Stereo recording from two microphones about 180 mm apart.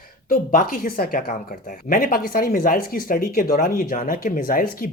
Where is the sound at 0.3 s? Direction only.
55° left (ahead or behind).